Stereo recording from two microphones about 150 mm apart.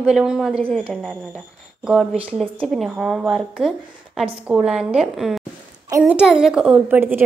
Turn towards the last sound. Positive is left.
turn(degrees=-15)  # may be behind; listen again after turning